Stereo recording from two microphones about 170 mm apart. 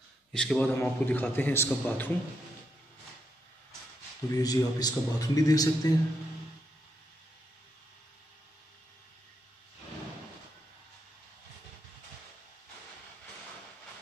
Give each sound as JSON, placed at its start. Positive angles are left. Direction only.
{"t": 0.3, "sound": "a man's voice", "side_deg": 5}
{"t": 4.3, "sound": "a man's voice", "side_deg": 20}